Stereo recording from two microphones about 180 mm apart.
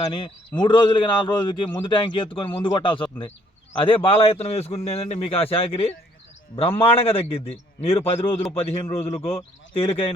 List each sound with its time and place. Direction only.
0.0 s a man's voice: 25° left (ahead or behind)